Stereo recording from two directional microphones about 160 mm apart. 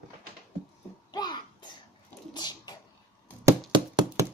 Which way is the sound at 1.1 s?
25° left (ahead or behind).